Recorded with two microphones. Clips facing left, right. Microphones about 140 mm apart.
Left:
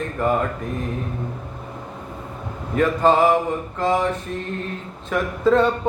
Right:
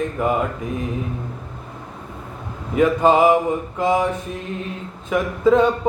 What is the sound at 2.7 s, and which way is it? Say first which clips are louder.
Mantra: right 2 dB; 10° right (ahead or behind).